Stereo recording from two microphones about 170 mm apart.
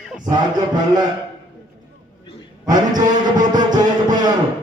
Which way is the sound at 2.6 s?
25° right (ahead or behind).